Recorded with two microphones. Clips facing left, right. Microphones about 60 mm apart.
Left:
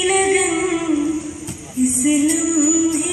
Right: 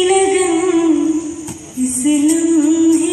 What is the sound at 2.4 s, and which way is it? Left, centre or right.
Music, centre.